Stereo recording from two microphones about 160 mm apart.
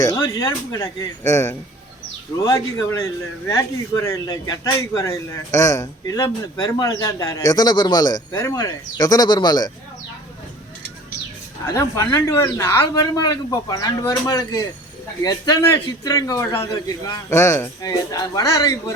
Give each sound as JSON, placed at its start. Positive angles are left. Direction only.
{"t": 0.0, "sound": "speech", "side_deg": 20}
{"t": 11.7, "sound": "speech", "side_deg": 20}